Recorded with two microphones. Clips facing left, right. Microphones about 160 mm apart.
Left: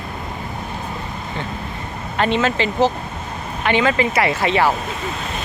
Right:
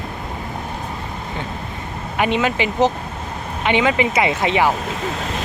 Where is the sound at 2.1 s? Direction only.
15° right (ahead or behind).